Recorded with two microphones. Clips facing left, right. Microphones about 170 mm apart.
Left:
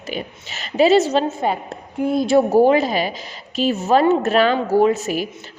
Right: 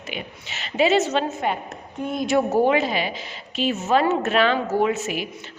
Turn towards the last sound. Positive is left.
turn(degrees=40)  # may be behind; listen again after turning